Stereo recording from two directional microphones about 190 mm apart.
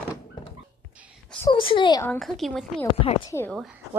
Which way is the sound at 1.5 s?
25° left (ahead or behind).